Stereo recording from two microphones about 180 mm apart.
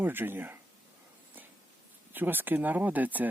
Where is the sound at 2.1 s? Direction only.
10° right (ahead or behind).